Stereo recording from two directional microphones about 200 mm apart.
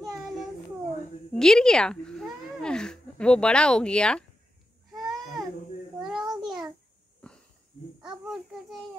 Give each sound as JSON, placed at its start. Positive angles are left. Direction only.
{"t": 1.3, "sound": "speech", "side_deg": 0}
{"t": 4.9, "sound": "a sound", "side_deg": 0}
{"t": 6.0, "sound": "child singing", "side_deg": 0}
{"t": 7.2, "sound": "wheeze", "side_deg": 5}
{"t": 8.0, "sound": "babbling", "side_deg": 0}